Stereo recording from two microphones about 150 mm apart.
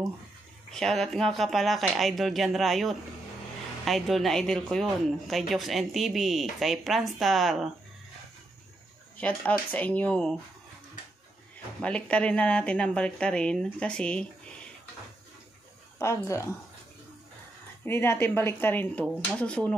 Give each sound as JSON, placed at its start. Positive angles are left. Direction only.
{"t": 0.7, "sound": "speech", "side_deg": 5}
{"t": 9.2, "sound": "speech", "side_deg": 10}
{"t": 11.8, "sound": "speech", "side_deg": 10}
{"t": 16.0, "sound": "speech", "side_deg": 20}
{"t": 17.8, "sound": "speech", "side_deg": 15}